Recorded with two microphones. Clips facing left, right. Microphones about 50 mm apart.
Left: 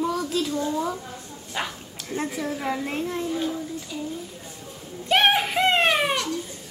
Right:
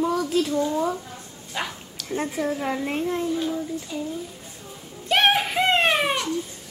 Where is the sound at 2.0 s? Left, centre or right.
Left.